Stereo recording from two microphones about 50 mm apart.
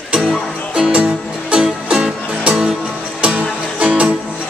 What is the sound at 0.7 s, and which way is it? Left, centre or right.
Music, centre.